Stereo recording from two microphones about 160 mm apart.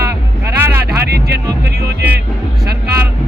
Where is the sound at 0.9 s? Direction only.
85° right.